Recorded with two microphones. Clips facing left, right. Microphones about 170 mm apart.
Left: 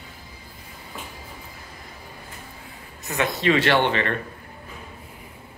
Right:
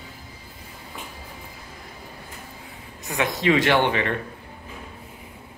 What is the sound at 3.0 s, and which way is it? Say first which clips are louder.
Speech: even; 15° right (ahead or behind).